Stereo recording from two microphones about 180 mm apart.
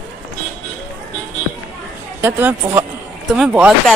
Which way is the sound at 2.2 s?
10° right (ahead or behind).